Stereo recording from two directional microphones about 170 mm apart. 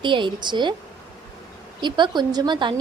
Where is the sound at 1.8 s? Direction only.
25° right (ahead or behind).